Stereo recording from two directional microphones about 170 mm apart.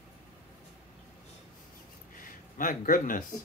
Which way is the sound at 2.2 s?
50° left (ahead or behind).